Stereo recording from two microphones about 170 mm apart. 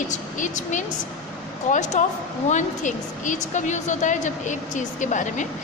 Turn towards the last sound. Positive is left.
turn(degrees=45)  # may be behind; listen again after turning